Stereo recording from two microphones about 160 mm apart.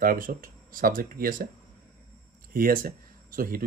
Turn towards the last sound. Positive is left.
turn(degrees=-65)  # may be behind; listen again after turning